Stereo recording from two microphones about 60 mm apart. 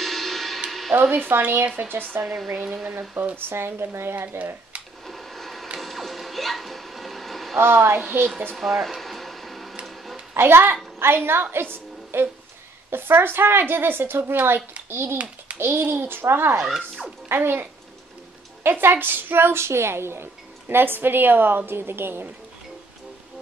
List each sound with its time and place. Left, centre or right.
0.0 s music: centre
0.7 s a sound: centre
1.1 s a woman's voice: right
2.3 s speech: centre
2.9 s a woman's voice: right
5.0 s a sound: centre
7.5 s a woman's voice: right
8.5 s a sound: centre
10.3 s a woman's voice: right